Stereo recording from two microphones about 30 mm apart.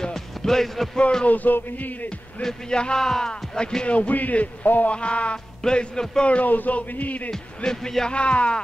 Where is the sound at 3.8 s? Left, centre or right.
Left.